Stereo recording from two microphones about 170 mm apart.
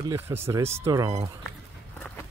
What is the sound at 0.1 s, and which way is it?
Speech, 15° right (ahead or behind).